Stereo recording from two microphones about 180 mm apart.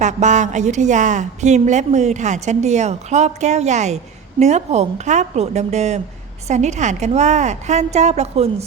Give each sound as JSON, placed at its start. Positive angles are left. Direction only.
{"t": 0.0, "sound": "a woman's voice", "side_deg": -40}